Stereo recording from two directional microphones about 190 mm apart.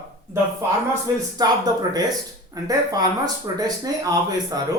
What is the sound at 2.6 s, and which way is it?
Speech, 20° right (ahead or behind).